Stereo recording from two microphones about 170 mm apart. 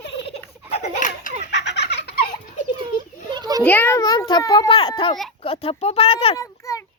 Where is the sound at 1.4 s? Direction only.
90° left.